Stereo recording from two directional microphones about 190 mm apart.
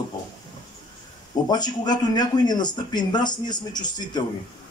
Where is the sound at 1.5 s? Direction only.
20° left (ahead or behind).